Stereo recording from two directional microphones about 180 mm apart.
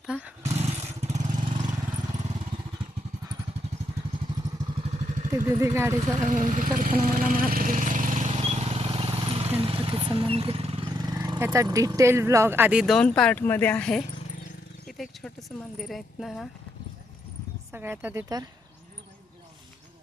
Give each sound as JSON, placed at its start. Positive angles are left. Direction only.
{"t": 0.1, "sound": "speech", "side_deg": -5}
{"t": 0.4, "sound": "vehicle", "side_deg": -35}
{"t": 5.5, "sound": "a woman's voice", "side_deg": -15}
{"t": 6.2, "sound": "vehicle", "side_deg": -45}
{"t": 12.8, "sound": "speech", "side_deg": 5}
{"t": 17.7, "sound": "a woman's voice", "side_deg": -10}